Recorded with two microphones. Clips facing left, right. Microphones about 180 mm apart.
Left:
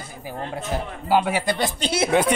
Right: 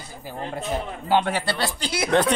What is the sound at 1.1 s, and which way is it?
Speech, 10° left (ahead or behind).